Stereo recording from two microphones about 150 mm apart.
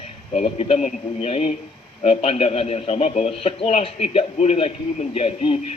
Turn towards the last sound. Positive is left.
turn(degrees=40)  # may be behind; listen again after turning